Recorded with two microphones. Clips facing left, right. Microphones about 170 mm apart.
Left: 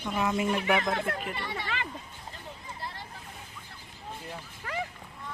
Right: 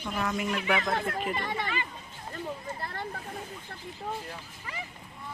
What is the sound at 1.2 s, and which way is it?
Speech, 45° right (ahead or behind).